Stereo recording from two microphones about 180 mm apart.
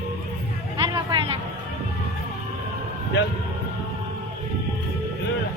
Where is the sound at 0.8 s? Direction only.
25° right (ahead or behind).